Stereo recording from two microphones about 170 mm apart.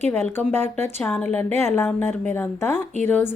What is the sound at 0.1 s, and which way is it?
A woman's voice, 10° left (ahead or behind).